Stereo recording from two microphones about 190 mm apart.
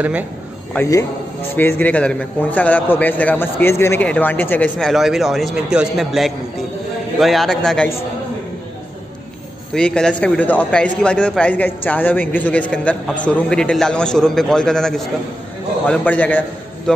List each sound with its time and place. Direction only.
0.7 s a man's voice: 15° left (ahead or behind)
9.8 s a man's voice: 5° left (ahead or behind)